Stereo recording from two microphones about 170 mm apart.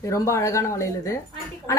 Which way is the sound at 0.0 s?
20° left (ahead or behind).